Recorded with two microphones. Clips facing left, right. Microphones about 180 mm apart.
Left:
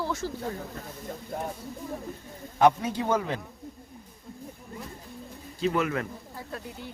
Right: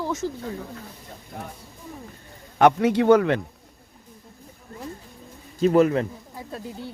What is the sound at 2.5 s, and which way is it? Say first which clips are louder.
Speech: right 5 dB; 70° right (ahead or behind).